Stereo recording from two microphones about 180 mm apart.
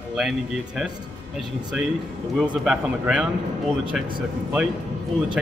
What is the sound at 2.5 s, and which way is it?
Speech, 5° right (ahead or behind).